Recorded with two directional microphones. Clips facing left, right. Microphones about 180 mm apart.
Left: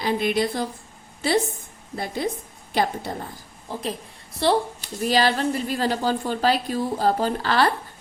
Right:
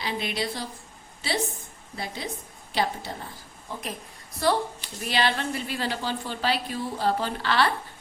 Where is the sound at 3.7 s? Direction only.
35° left (ahead or behind).